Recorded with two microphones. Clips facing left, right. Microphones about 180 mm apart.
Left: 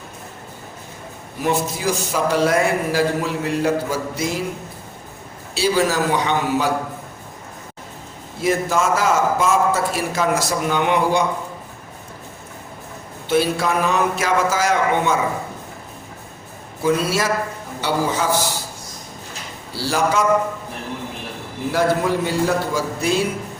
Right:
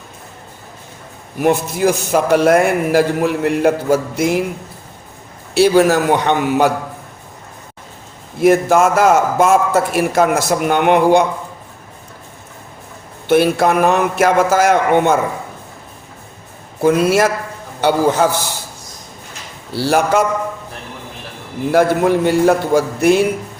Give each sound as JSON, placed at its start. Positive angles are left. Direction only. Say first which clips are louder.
{"t": 1.4, "sound": "a man's voice", "louder": "right 7 dB", "side_deg": -55}
{"t": 5.5, "sound": "a man's voice", "louder": "right 7 dB", "side_deg": -60}
{"t": 8.4, "sound": "a man's voice", "louder": "right 8 dB", "side_deg": -60}
{"t": 13.2, "sound": "a man's voice", "louder": "right 6 dB", "side_deg": -60}
{"t": 16.8, "sound": "a man's voice", "louder": "right 7 dB", "side_deg": -55}
{"t": 19.8, "sound": "a man's voice", "louder": "right 5 dB", "side_deg": -60}
{"t": 21.7, "sound": "a man's voice", "louder": "right 6 dB", "side_deg": -60}